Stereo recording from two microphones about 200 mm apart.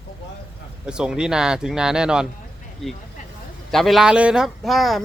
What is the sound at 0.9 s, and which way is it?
Speech, 5° right (ahead or behind).